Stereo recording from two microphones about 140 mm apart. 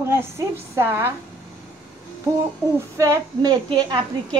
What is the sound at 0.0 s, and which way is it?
A woman's voice, 15° right (ahead or behind).